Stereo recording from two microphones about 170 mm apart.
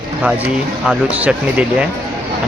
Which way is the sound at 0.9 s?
5° right (ahead or behind).